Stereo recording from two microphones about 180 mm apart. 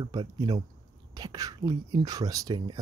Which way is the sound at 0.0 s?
20° right (ahead or behind).